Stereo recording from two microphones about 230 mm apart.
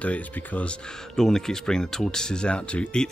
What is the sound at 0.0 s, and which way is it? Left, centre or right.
Speech, centre.